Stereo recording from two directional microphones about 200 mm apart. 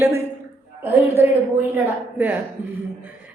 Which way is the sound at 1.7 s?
10° right (ahead or behind).